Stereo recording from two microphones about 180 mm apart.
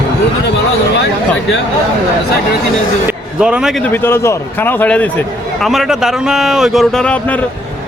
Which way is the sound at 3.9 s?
10° left (ahead or behind).